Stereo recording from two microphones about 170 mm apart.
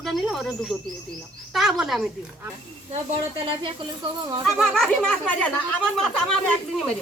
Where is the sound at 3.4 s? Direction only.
30° right (ahead or behind).